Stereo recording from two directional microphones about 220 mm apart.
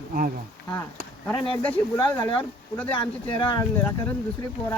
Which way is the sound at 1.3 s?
25° left (ahead or behind).